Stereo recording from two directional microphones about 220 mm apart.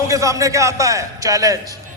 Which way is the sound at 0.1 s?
15° right (ahead or behind).